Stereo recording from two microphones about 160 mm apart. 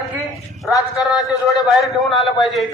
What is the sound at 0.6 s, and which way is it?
Speech, centre (ahead or behind).